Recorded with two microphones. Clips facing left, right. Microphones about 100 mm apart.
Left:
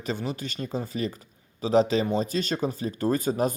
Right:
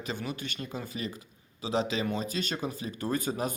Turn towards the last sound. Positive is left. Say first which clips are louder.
# left 6 dB
turn(degrees=40)  # may be behind; listen again after turning